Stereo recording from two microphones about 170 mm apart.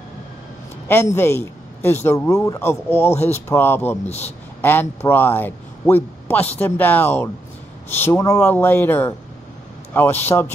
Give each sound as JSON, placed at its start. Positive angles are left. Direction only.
{"t": 0.8, "sound": "a man's voice", "side_deg": 15}
{"t": 4.0, "sound": "a man's voice", "side_deg": 40}
{"t": 4.6, "sound": "a man's voice", "side_deg": 10}